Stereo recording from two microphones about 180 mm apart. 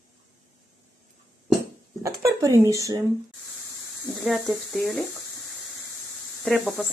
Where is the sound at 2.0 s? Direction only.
15° right (ahead or behind).